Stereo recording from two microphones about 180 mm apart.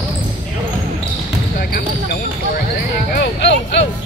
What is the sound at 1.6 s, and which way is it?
Basketball bounce, 55° left (ahead or behind).